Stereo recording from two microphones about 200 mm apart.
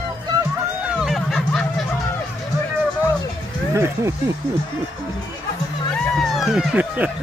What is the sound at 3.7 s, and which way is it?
Speech, 15° right (ahead or behind).